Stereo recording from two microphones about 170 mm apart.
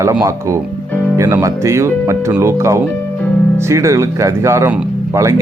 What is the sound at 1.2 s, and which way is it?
Speech, 15° right (ahead or behind).